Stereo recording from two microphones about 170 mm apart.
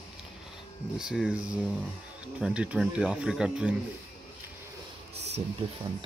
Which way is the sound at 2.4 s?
5° right (ahead or behind).